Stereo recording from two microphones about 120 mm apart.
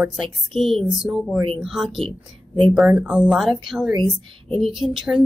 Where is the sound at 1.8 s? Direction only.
Centre (ahead or behind).